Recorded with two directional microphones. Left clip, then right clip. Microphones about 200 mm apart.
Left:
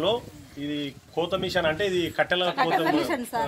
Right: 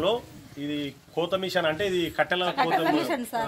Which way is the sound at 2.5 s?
30° right (ahead or behind).